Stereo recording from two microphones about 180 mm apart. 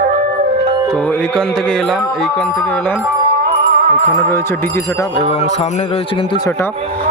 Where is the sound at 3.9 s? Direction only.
40° right (ahead or behind).